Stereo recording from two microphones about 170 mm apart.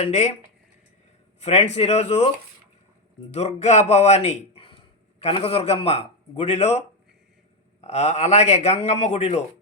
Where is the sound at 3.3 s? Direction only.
40° left (ahead or behind).